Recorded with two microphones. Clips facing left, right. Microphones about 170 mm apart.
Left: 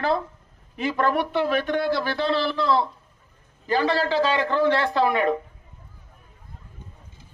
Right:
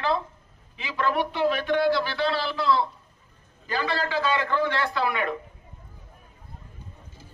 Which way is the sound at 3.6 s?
35° left (ahead or behind).